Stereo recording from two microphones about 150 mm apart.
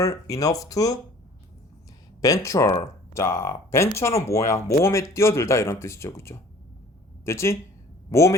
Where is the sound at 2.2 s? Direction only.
20° left (ahead or behind).